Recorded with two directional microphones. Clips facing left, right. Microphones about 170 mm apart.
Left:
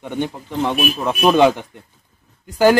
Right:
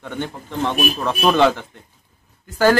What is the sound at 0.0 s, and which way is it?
A man's voice, 15° left (ahead or behind).